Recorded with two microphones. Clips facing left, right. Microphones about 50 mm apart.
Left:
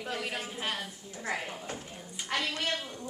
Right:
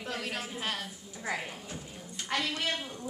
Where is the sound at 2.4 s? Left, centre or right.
Centre.